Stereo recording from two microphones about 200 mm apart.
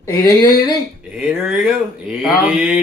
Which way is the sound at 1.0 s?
5° right (ahead or behind).